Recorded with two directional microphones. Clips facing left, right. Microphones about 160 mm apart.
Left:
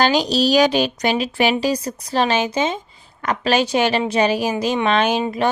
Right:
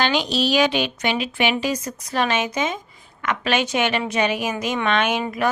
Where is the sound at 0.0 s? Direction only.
35° left (ahead or behind).